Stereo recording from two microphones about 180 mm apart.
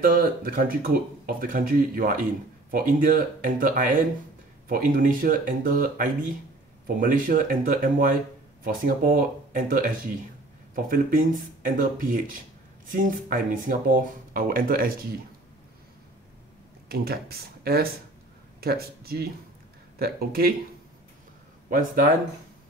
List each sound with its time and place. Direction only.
0.0 s speech: 50° right (ahead or behind)
16.9 s speech: 55° right (ahead or behind)
21.6 s speech: 50° right (ahead or behind)